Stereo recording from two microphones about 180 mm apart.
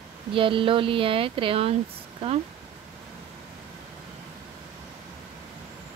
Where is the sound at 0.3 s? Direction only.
30° right (ahead or behind).